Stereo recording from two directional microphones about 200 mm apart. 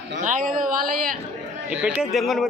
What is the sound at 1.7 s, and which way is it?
Speech, 5° right (ahead or behind).